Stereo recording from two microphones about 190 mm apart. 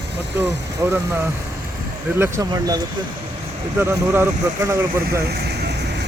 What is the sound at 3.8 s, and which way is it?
Speech, 15° right (ahead or behind).